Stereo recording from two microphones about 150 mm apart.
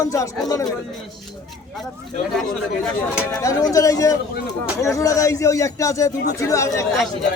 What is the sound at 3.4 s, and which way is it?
A man's voice, 20° left (ahead or behind).